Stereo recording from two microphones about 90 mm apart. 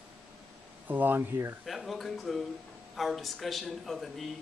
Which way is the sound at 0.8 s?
20° right (ahead or behind).